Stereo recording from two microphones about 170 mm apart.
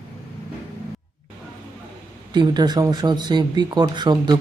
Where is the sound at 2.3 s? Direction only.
25° right (ahead or behind).